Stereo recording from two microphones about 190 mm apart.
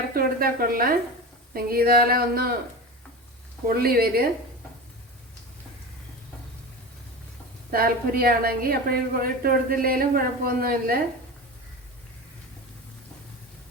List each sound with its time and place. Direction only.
0.1 s a woman's voice: 50° right (ahead or behind)
3.8 s speech: 50° right (ahead or behind)
7.7 s speech: 50° right (ahead or behind)